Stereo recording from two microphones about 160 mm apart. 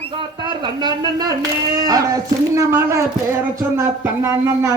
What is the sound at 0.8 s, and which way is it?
A woman's voice, 25° right (ahead or behind).